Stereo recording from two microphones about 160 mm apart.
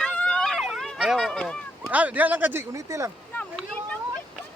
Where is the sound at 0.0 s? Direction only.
5° left (ahead or behind).